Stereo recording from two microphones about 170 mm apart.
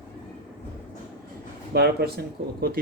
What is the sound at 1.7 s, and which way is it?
Speech, 70° right (ahead or behind).